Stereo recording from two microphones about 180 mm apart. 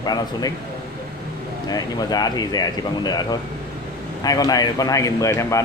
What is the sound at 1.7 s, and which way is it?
Speech, 20° left (ahead or behind).